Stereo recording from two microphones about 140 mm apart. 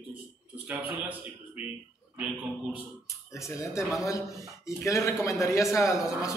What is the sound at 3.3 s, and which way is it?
Speech, 20° left (ahead or behind).